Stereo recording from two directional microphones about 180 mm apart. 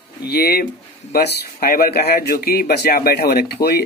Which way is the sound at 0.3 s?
60° left (ahead or behind).